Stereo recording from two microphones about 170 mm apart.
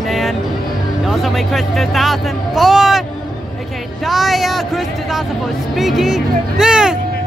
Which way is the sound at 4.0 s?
Centre (ahead or behind).